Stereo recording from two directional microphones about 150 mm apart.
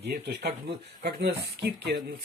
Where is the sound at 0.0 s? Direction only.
90° right.